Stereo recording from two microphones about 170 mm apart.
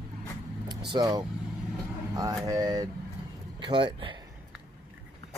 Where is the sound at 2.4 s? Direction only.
20° right (ahead or behind).